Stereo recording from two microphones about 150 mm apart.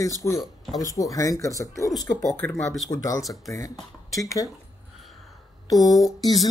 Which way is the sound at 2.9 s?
20° left (ahead or behind).